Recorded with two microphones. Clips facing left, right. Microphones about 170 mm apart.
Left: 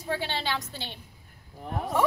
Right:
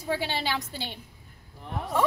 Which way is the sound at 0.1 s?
10° right (ahead or behind).